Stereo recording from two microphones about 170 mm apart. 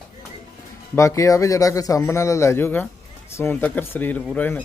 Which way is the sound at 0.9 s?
15° left (ahead or behind).